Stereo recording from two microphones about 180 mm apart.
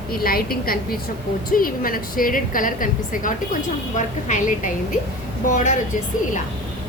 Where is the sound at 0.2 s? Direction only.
55° left (ahead or behind).